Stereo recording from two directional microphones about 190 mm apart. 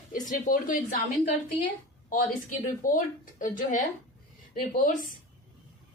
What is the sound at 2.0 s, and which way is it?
A woman's voice, 45° left (ahead or behind).